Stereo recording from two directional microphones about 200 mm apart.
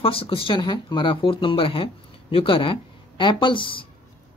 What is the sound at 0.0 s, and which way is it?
Speech, 25° left (ahead or behind).